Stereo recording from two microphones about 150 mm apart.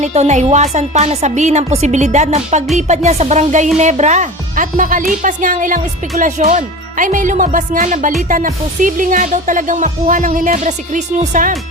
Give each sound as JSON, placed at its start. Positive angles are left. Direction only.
{"t": 0.0, "sound": "speech", "side_deg": -50}